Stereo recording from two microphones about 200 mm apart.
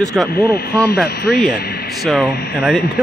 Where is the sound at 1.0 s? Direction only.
50° left (ahead or behind).